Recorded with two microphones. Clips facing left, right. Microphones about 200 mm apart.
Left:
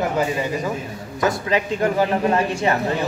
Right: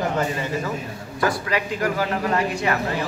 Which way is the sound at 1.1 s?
20° left (ahead or behind).